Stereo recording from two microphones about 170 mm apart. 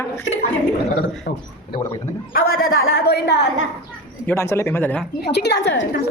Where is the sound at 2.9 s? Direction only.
75° left (ahead or behind).